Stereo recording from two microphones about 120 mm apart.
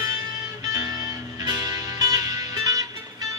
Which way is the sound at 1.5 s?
30° right (ahead or behind).